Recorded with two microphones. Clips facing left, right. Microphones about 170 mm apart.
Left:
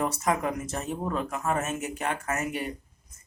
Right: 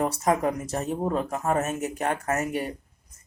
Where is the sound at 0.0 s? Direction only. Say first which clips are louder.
Right 3 dB; 35° right (ahead or behind).